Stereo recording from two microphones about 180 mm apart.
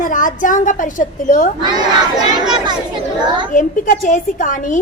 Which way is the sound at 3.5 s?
45° left (ahead or behind).